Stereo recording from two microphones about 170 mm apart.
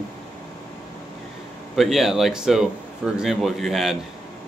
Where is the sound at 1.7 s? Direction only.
Centre (ahead or behind).